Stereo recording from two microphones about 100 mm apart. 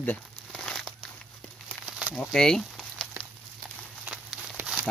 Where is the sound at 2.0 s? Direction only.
Centre (ahead or behind).